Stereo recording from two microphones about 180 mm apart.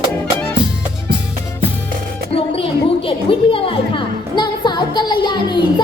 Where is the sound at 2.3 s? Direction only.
30° left (ahead or behind).